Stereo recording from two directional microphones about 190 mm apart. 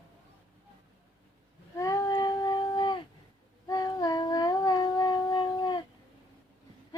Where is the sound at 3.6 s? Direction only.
20° left (ahead or behind).